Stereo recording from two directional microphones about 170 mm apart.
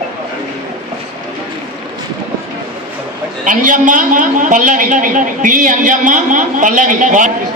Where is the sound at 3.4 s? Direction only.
50° right (ahead or behind).